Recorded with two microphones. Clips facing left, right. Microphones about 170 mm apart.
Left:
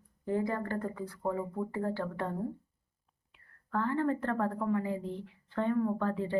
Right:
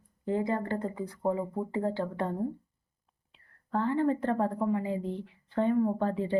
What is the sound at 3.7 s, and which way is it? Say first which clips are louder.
A woman's voice: right 3 dB; 20° right (ahead or behind).